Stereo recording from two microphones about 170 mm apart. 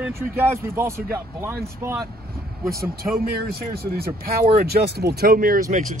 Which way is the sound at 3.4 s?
60° right (ahead or behind).